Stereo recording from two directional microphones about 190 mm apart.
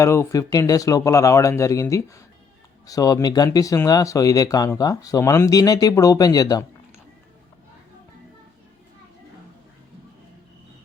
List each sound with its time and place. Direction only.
0.0 s speech: 15° left (ahead or behind)